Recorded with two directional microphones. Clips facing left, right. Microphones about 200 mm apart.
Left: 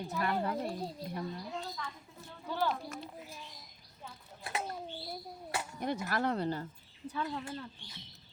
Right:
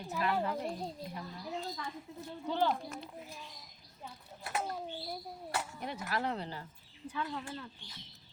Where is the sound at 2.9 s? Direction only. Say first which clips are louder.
Even; centre (ahead or behind).